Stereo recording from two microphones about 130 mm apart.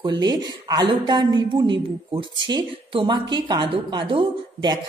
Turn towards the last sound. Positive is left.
turn(degrees=-40)  # may be behind; listen again after turning